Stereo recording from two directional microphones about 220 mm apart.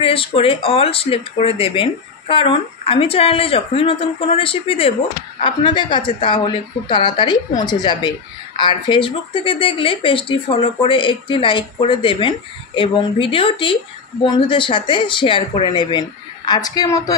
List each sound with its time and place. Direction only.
0.0 s speech: 25° left (ahead or behind)